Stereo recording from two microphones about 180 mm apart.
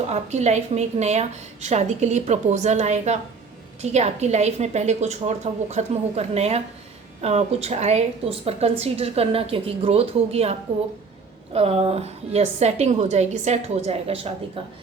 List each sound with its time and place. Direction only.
0.1 s a woman's voice: 40° right (ahead or behind)